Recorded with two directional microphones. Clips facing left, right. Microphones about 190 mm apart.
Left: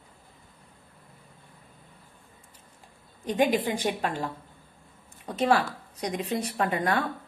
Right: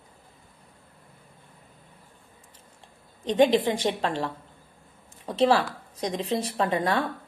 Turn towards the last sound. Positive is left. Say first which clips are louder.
# right 2 dB
turn(degrees=-30)  # may be behind; listen again after turning